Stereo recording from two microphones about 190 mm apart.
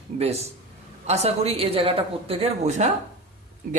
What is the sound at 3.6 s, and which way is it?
Speech, 45° right (ahead or behind).